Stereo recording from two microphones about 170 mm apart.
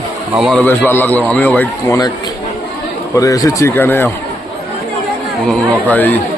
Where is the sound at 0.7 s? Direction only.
10° left (ahead or behind).